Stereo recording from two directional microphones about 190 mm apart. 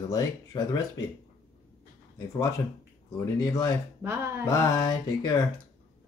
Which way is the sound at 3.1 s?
20° left (ahead or behind).